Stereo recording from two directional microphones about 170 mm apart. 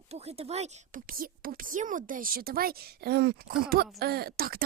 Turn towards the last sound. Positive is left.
turn(degrees=-60)  # may be behind; listen again after turning